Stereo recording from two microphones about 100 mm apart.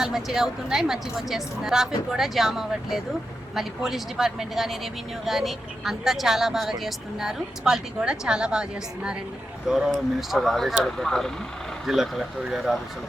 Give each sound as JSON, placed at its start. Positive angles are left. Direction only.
{"t": 0.0, "sound": "speech", "side_deg": -5}
{"t": 9.6, "sound": "speech", "side_deg": -5}